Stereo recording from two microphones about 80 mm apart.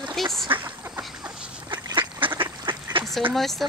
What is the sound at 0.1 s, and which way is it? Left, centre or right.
Duck, centre.